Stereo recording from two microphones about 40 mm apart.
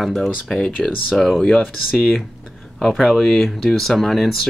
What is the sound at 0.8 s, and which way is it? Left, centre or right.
Speech, centre.